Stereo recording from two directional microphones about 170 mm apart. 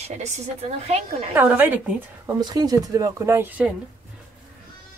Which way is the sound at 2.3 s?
25° right (ahead or behind).